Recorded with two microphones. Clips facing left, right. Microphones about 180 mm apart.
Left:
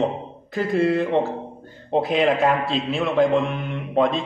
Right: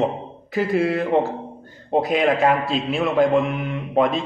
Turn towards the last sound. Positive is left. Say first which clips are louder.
# right 1 dB
turn(degrees=0)  # may be behind; listen again after turning